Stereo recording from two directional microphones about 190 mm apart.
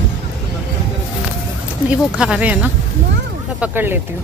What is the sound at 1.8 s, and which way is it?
Speech, 5° right (ahead or behind).